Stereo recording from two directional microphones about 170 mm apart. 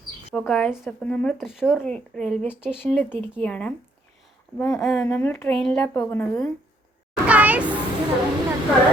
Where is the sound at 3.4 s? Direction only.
5° left (ahead or behind).